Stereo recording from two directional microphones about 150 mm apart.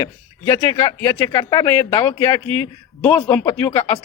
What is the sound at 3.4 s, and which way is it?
Speech, 25° left (ahead or behind).